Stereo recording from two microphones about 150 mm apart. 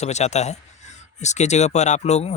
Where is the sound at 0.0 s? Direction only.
50° left (ahead or behind).